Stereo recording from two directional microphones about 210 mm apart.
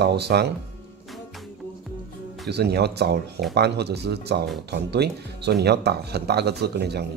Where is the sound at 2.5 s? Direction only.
50° right (ahead or behind).